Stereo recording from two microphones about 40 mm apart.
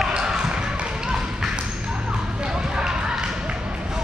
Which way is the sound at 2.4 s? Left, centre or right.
Centre.